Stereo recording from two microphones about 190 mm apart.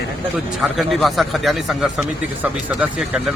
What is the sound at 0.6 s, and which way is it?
Speech, centre (ahead or behind).